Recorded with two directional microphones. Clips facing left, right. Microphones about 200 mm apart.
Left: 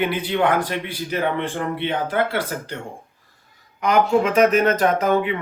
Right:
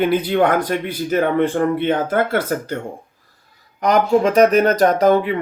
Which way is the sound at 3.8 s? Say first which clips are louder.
Right 3 dB; 35° right (ahead or behind).